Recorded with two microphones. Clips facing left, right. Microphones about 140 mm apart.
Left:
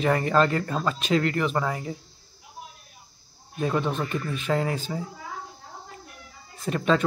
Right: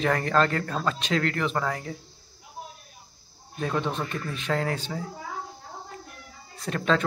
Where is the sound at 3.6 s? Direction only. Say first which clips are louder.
Left 2 dB; 5° left (ahead or behind).